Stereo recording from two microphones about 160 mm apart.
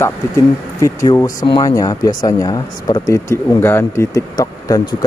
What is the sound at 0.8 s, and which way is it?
Speech, 20° left (ahead or behind).